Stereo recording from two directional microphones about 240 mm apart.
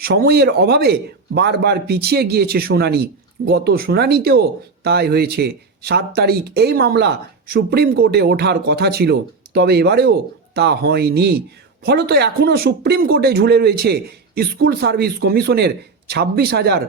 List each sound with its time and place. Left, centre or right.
0.0 s a man's voice: right